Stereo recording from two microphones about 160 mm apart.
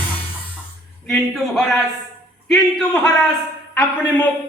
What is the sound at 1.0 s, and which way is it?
A man's voice, centre (ahead or behind).